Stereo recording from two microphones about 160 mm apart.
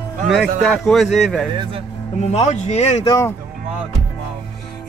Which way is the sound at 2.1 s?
40° left (ahead or behind).